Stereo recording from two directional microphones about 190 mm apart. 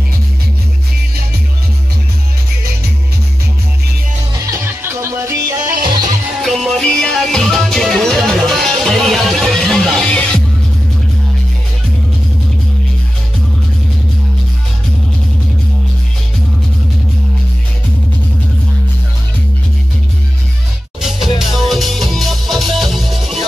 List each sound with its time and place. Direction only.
4.5 s music: 15° right (ahead or behind)
5.6 s music: 45° right (ahead or behind)
6.4 s music: centre (ahead or behind)
21.0 s music: centre (ahead or behind)